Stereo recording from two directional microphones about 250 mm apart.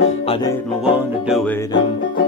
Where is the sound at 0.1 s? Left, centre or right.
Left.